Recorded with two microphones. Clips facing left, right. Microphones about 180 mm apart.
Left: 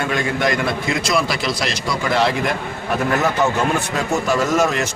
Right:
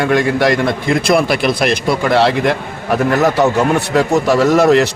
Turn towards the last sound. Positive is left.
turn(degrees=-70)  # may be behind; listen again after turning